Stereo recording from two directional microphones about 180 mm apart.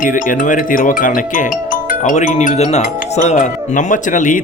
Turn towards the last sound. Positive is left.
turn(degrees=45)  # may be behind; listen again after turning